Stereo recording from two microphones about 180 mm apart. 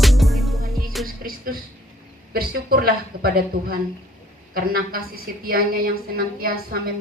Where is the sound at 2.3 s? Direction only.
55° right (ahead or behind).